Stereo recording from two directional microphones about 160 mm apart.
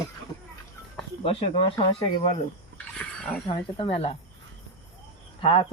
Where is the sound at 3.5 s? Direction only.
35° left (ahead or behind).